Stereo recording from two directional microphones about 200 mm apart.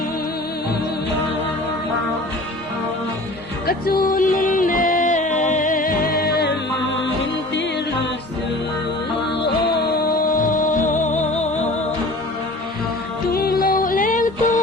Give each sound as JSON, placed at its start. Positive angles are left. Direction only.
{"t": 3.7, "sound": "music", "side_deg": 50}
{"t": 10.3, "sound": "music", "side_deg": 40}
{"t": 13.3, "sound": "music", "side_deg": 50}